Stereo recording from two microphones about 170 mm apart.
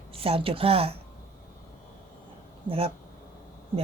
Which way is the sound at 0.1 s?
35° right (ahead or behind).